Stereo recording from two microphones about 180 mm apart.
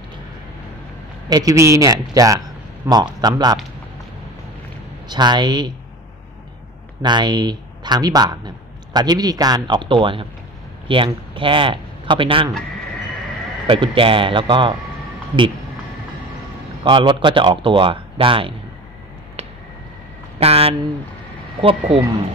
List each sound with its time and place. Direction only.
1.3 s speech: 20° right (ahead or behind)
5.0 s speech: 25° right (ahead or behind)
7.0 s speech: 25° right (ahead or behind)
13.7 s speech: 30° right (ahead or behind)
16.8 s speech: 25° right (ahead or behind)
20.3 s speech: 35° right (ahead or behind)